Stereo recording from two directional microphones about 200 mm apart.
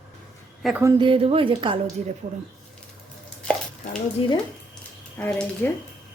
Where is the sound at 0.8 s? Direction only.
20° right (ahead or behind).